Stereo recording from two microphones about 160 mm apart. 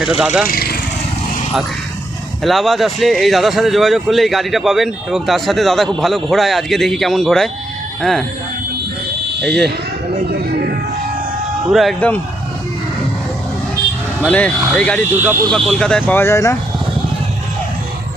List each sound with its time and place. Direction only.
0.0 s speech: 5° right (ahead or behind)
0.4 s speech: 70° left (ahead or behind)
2.4 s speech: centre (ahead or behind)
11.7 s speech: centre (ahead or behind)
11.9 s speech: 10° left (ahead or behind)
14.3 s speech: 10° left (ahead or behind)
15.2 s speech: 15° right (ahead or behind)
15.5 s speech: 5° left (ahead or behind); by 16.6 s 20° left (ahead or behind)